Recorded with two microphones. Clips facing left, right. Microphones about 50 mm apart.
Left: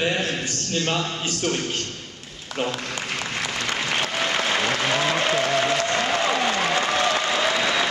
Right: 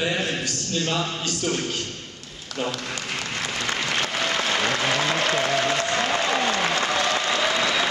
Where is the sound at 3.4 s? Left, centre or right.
Centre.